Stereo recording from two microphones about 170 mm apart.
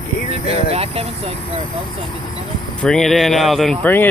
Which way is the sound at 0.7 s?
35° right (ahead or behind).